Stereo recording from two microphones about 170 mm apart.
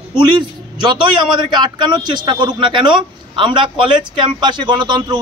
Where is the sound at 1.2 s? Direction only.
25° right (ahead or behind).